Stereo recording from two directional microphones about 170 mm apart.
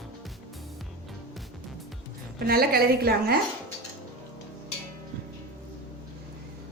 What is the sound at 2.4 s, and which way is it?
Speech, 65° right (ahead or behind).